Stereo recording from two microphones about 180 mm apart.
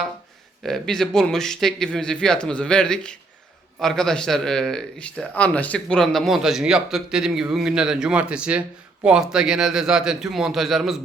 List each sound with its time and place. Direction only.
0.6 s speech: centre (ahead or behind)